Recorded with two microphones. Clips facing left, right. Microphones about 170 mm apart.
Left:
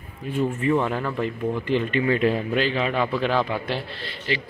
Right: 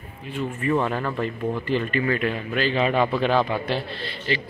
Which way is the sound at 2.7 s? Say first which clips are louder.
Right 3 dB; 5° right (ahead or behind).